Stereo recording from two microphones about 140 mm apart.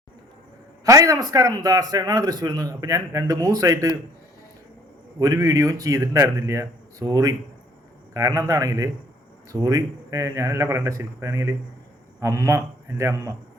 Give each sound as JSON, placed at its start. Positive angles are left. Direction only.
{"t": 0.9, "sound": "a man's voice", "side_deg": -25}
{"t": 5.2, "sound": "a man's voice", "side_deg": -25}